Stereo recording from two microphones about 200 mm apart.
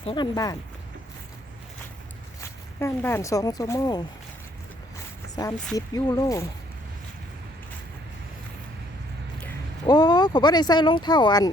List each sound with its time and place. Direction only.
0.0 s speech: 25° left (ahead or behind)
2.4 s speech: 15° left (ahead or behind)
5.7 s speech: 20° left (ahead or behind)
9.8 s speech: 20° left (ahead or behind)